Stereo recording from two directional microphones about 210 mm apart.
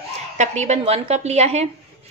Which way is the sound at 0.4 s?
35° right (ahead or behind).